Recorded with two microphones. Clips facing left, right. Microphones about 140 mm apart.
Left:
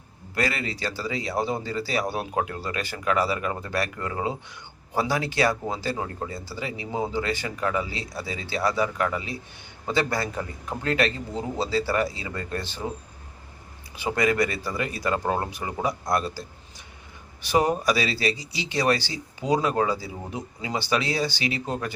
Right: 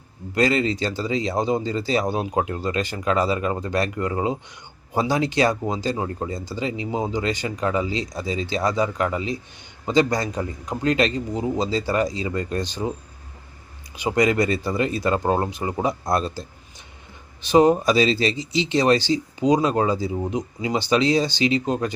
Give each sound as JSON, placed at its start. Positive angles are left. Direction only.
{"t": 0.3, "sound": "speech", "side_deg": -25}
{"t": 13.9, "sound": "speech", "side_deg": -20}